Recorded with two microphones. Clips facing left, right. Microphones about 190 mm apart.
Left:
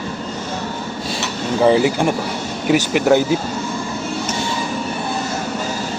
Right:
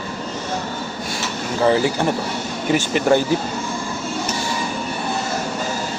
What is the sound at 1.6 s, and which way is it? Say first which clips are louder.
Speech: left 3 dB; 15° left (ahead or behind).